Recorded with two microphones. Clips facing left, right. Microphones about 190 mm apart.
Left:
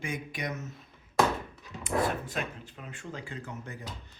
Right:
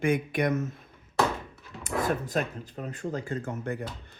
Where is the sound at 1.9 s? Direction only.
40° right (ahead or behind).